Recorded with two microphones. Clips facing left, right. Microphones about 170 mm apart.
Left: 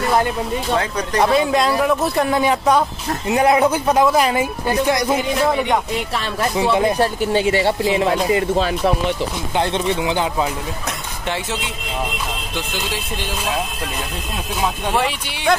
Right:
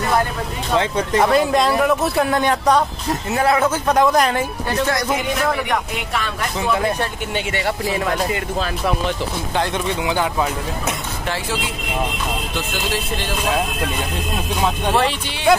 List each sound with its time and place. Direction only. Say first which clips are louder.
0.7 s speech: right 5 dB; 25° right (ahead or behind)
1.2 s speech: left 1 dB; centre (ahead or behind)
3.3 s speech: left 3 dB; 20° left (ahead or behind)
7.0 s speech: left 7 dB; 35° left (ahead or behind)
7.8 s speech: left 4 dB; 25° left (ahead or behind)